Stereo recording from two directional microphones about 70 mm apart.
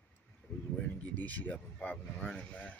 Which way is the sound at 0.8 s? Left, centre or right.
Left.